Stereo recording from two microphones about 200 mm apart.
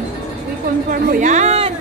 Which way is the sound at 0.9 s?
45° right (ahead or behind).